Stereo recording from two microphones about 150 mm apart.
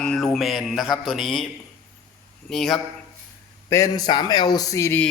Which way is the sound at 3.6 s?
20° left (ahead or behind).